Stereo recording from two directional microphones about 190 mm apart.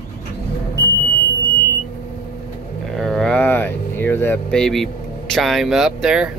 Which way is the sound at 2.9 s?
Centre (ahead or behind).